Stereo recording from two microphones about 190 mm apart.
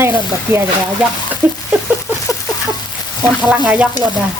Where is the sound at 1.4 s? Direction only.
10° right (ahead or behind).